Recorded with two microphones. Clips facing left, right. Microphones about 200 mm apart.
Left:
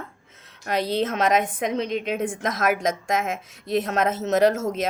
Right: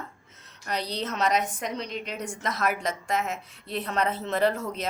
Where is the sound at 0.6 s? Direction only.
75° left (ahead or behind).